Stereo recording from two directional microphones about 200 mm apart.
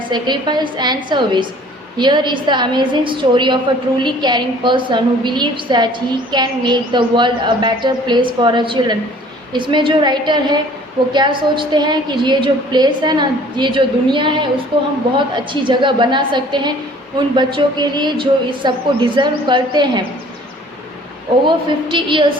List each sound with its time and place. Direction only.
0.1 s a woman's voice: 20° right (ahead or behind)
21.4 s a woman's voice: 25° right (ahead or behind)